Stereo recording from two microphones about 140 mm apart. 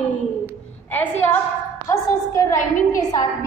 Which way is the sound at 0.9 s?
15° left (ahead or behind).